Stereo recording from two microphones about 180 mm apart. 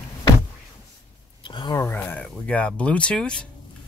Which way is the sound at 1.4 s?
25° left (ahead or behind).